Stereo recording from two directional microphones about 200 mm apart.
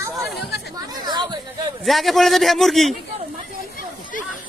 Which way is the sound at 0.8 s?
20° right (ahead or behind).